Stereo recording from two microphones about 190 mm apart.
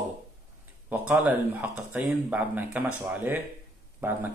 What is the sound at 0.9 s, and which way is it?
Speech, 10° right (ahead or behind).